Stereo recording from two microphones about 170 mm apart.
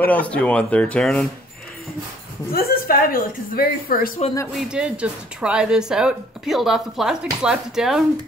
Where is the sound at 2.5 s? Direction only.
60° left (ahead or behind).